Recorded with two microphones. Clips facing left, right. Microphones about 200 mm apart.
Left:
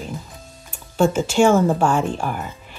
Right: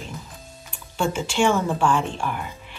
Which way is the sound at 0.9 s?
40° left (ahead or behind).